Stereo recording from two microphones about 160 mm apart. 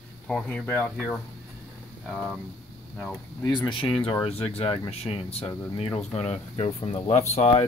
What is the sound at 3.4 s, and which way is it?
Speech, 25° left (ahead or behind).